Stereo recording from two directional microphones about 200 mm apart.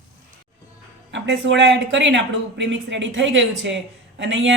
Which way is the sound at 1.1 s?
65° right (ahead or behind).